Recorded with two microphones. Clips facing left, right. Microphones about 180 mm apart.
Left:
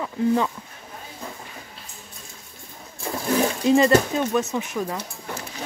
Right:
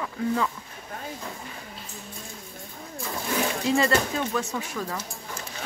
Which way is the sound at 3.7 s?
20° left (ahead or behind).